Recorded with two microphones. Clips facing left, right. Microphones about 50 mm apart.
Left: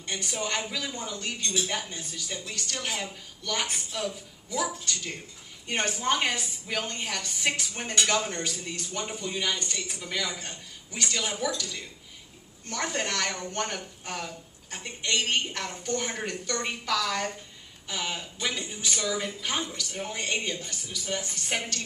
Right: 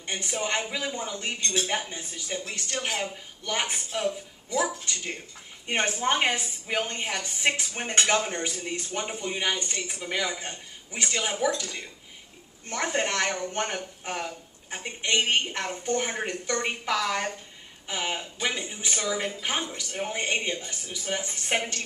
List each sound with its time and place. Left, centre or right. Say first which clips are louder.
0.0 s a woman's voice: right 2 dB; right
1.4 s speech: right 2 dB; right
1.7 s a woman's voice: right 3 dB; right
12.6 s a woman's voice: right 3 dB; right